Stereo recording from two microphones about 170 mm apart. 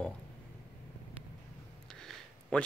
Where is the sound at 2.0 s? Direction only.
5° left (ahead or behind).